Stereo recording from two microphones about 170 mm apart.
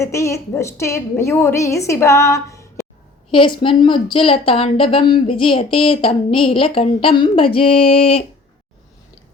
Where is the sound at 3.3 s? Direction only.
30° left (ahead or behind).